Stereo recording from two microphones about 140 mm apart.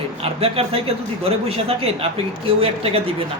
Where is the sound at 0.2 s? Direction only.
45° right (ahead or behind).